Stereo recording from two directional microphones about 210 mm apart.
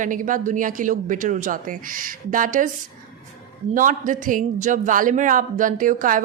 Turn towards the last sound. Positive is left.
turn(degrees=-40)  # may be behind; listen again after turning